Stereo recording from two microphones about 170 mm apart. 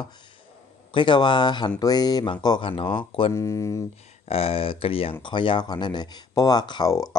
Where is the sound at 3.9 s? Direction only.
35° left (ahead or behind); by 7.2 s 20° left (ahead or behind).